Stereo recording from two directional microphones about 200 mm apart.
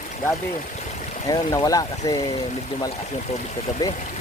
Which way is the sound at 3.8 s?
15° left (ahead or behind).